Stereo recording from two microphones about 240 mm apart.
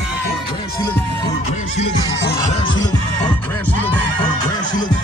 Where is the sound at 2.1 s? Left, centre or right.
Left.